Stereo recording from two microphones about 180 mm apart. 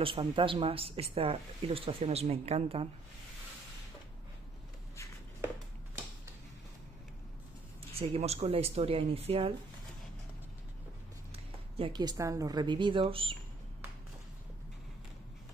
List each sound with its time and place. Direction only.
0.0 s speech: 30° right (ahead or behind)
7.9 s speech: 35° right (ahead or behind)
11.3 s a woman's voice: 30° right (ahead or behind)